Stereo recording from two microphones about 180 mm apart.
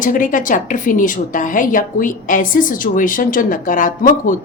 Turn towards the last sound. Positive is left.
turn(degrees=45)  # may be behind; listen again after turning